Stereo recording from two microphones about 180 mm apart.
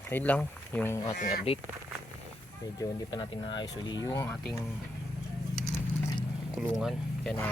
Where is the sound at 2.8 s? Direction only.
20° left (ahead or behind).